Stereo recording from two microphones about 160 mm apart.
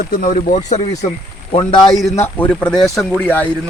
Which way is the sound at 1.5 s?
30° left (ahead or behind).